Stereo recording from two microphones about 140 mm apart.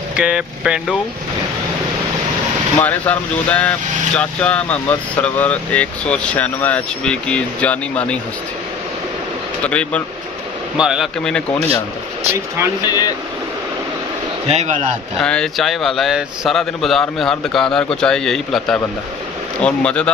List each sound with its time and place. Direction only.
0.2 s a man's voice: 5° right (ahead or behind)
2.8 s speech: 10° left (ahead or behind)
9.6 s speech: 10° left (ahead or behind)
10.8 s a man's voice: 5° right (ahead or behind)
12.8 s speech: 30° left (ahead or behind)
14.5 s speech: 55° right (ahead or behind)
15.2 s a man's voice: 5° left (ahead or behind)